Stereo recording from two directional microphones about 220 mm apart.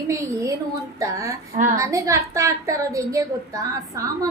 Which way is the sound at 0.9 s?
15° right (ahead or behind).